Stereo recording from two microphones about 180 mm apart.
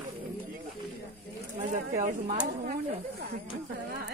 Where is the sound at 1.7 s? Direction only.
45° right (ahead or behind).